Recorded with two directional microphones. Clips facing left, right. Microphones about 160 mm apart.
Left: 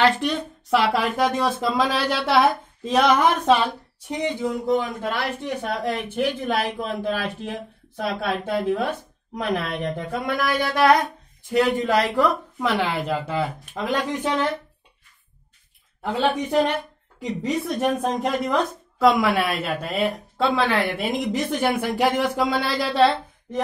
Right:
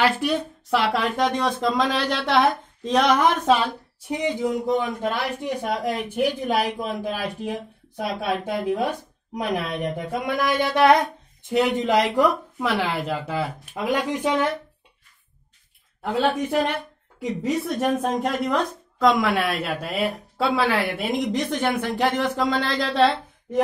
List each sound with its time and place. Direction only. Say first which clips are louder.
0.0 s speech: left 1 dB; 5° right (ahead or behind)
5.0 s a woman's voice: right 1 dB; 15° right (ahead or behind)
12.5 s speech: left 1 dB; centre (ahead or behind)
16.0 s speech: even; centre (ahead or behind)